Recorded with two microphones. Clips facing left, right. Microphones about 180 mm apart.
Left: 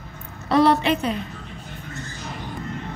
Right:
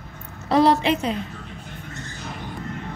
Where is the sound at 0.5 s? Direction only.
30° right (ahead or behind).